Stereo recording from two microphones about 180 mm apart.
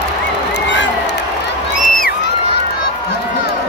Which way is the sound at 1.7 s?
50° left (ahead or behind).